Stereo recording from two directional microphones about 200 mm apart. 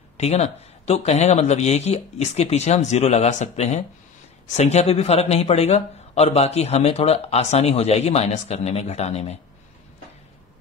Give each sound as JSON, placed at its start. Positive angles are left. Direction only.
{"t": 0.2, "sound": "a man's voice", "side_deg": 35}